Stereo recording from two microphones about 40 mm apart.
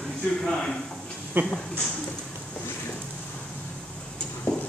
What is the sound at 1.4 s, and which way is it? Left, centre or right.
Speech, right.